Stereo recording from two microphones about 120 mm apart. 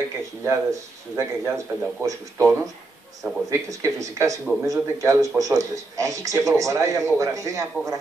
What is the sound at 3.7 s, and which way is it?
Speech, 25° right (ahead or behind).